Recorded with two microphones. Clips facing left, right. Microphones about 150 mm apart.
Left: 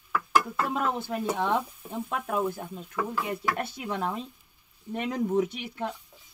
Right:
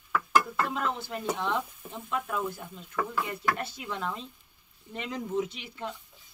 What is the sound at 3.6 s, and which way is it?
Speech, 50° left (ahead or behind).